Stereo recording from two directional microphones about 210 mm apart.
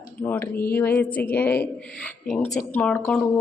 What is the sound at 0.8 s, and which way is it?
Speech, 10° left (ahead or behind).